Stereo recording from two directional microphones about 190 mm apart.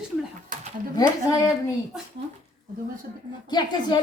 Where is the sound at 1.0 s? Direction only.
15° left (ahead or behind).